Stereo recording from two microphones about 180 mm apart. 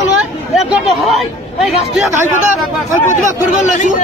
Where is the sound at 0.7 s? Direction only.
Centre (ahead or behind).